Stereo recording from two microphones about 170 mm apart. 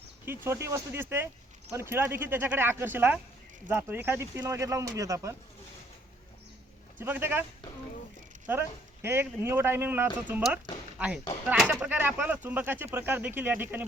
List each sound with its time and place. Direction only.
0.3 s speech: 15° right (ahead or behind)
7.0 s speech: 15° right (ahead or behind)
8.4 s speech: 15° right (ahead or behind)